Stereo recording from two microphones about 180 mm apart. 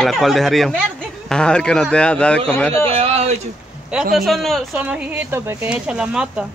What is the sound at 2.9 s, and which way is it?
Speech, 35° right (ahead or behind).